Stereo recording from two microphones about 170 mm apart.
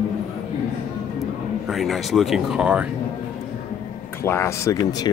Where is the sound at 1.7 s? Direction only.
Centre (ahead or behind).